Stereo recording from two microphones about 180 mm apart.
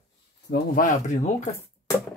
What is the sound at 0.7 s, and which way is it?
Speech, 40° left (ahead or behind).